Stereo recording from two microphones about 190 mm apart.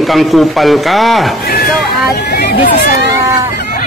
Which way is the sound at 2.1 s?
55° left (ahead or behind).